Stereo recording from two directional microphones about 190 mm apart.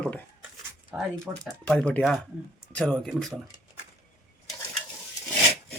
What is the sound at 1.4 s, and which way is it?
Speech, 5° left (ahead or behind).